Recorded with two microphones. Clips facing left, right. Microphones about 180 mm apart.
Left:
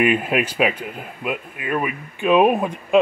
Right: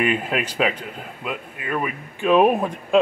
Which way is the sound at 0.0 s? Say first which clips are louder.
Left 3 dB; 10° left (ahead or behind).